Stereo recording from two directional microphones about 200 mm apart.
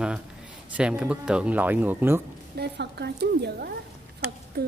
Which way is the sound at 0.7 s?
5° right (ahead or behind).